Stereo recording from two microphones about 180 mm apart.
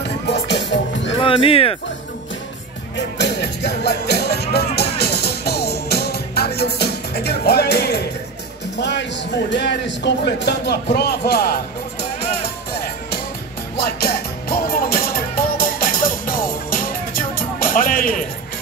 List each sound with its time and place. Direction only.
0.0 s music: 70° left (ahead or behind)
1.2 s speech: 30° left (ahead or behind)
3.0 s music: 70° left (ahead or behind)
8.7 s a man's voice: 75° left (ahead or behind)
13.7 s music: 60° left (ahead or behind)